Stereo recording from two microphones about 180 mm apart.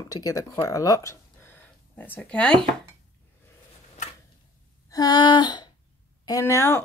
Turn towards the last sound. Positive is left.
turn(degrees=15)  # may be behind; listen again after turning